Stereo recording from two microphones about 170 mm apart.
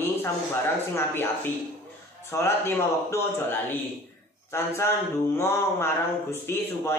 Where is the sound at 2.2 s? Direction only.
15° left (ahead or behind).